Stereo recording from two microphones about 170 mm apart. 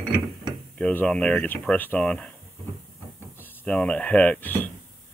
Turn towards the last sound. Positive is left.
turn(degrees=10)  # may be behind; listen again after turning